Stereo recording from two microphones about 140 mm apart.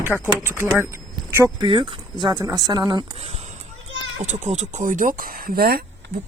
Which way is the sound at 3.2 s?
50° right (ahead or behind).